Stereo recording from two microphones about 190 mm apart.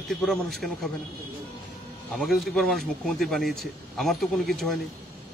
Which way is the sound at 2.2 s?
Centre (ahead or behind).